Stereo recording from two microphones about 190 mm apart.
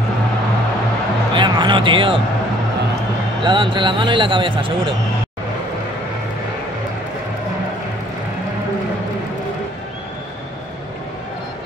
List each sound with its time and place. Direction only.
1.3 s music: 25° right (ahead or behind)
3.4 s speech: 25° right (ahead or behind)